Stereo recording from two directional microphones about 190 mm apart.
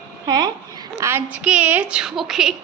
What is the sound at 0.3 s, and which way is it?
A child's voice, 20° right (ahead or behind).